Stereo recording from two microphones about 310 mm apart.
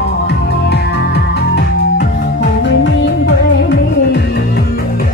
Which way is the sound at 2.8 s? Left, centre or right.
Left.